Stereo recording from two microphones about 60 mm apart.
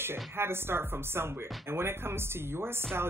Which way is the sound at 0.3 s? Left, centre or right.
Right.